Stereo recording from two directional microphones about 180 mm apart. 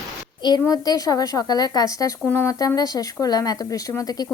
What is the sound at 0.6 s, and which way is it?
A woman's voice, 20° left (ahead or behind).